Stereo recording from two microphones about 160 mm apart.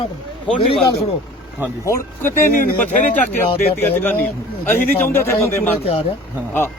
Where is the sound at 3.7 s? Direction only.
15° left (ahead or behind).